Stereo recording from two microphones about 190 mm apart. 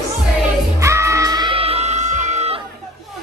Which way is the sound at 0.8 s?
15° right (ahead or behind).